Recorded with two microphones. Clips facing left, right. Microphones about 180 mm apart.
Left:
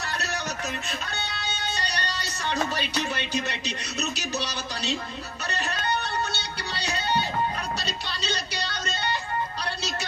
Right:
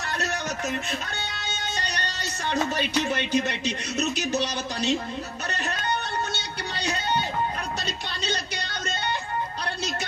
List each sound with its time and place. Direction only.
1.8 s music: 50° right (ahead or behind)
2.5 s speech: 50° right (ahead or behind)
6.3 s music: 50° right (ahead or behind)